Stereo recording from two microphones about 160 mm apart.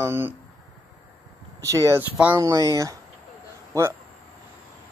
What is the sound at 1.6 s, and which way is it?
Speech, 20° right (ahead or behind).